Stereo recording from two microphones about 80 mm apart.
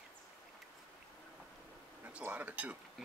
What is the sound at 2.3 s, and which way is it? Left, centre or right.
Speech, centre.